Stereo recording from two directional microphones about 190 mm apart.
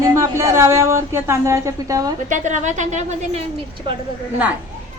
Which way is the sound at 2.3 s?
40° right (ahead or behind).